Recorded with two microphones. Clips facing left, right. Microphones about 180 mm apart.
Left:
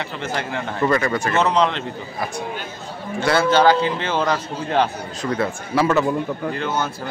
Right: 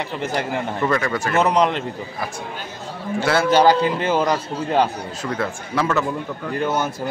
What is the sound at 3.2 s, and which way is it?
Speech, 5° right (ahead or behind).